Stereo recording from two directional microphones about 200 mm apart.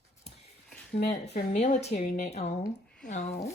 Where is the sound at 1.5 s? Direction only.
35° left (ahead or behind).